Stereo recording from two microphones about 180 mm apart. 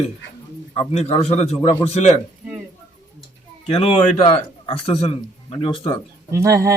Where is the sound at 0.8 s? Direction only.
35° left (ahead or behind).